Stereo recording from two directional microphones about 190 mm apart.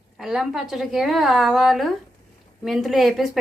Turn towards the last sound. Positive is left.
turn(degrees=0)  # may be behind; listen again after turning